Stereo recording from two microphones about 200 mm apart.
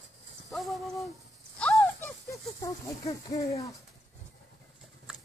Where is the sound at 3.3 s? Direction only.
15° left (ahead or behind).